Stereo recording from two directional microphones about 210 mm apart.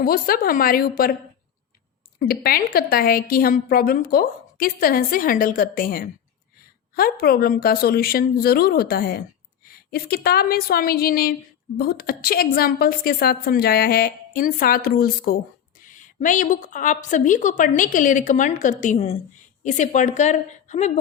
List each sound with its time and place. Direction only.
0.0 s a woman's voice: 45° left (ahead or behind)
2.1 s a woman's voice: 45° left (ahead or behind)